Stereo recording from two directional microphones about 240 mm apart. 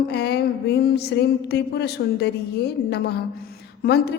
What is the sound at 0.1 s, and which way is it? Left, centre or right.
A woman's voice, left.